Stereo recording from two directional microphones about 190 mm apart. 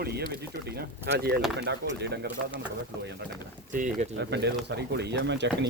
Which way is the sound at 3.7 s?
45° right (ahead or behind).